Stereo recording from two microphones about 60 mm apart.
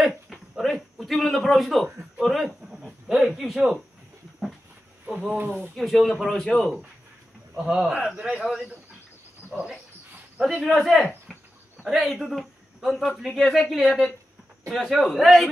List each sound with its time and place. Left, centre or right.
0.3 s a sound: centre
2.0 s speech: centre
2.6 s a sound: centre
5.4 s speech: right
5.8 s speech: centre
7.5 s speech: centre
11.3 s cricket: centre
11.8 s a man's voice: centre